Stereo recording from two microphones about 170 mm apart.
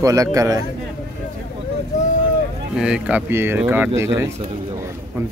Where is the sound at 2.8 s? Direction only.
10° right (ahead or behind).